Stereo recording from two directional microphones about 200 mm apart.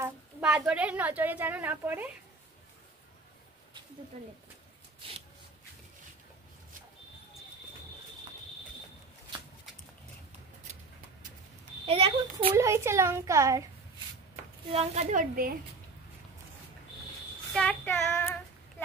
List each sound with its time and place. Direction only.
0.0 s a woman's voice: 5° right (ahead or behind)
11.8 s a child's voice: 30° right (ahead or behind)
12.5 s speech: 15° right (ahead or behind)
14.7 s a woman's voice: 30° right (ahead or behind)
17.6 s child singing: 10° left (ahead or behind)